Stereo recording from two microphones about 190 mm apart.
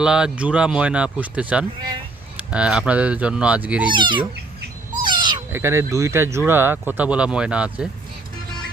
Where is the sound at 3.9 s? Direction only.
25° right (ahead or behind).